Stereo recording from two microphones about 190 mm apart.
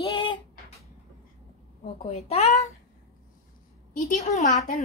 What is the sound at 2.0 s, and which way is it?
Child singing, 35° left (ahead or behind).